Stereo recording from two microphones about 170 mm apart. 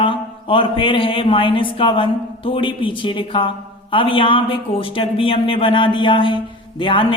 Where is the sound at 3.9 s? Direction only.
30° left (ahead or behind).